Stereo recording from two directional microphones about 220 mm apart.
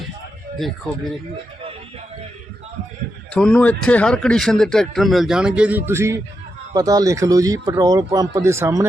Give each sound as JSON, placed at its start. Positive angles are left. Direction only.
{"t": 3.3, "sound": "a man's voice", "side_deg": 5}